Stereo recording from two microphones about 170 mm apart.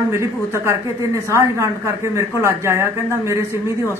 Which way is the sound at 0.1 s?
15° right (ahead or behind).